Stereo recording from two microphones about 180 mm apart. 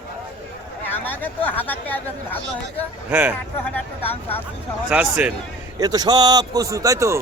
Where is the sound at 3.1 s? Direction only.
5° right (ahead or behind).